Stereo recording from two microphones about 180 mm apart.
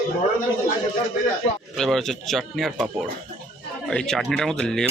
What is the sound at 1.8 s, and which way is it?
Speech, centre (ahead or behind).